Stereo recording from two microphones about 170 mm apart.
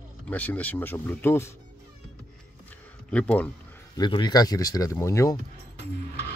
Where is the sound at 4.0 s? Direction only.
25° left (ahead or behind).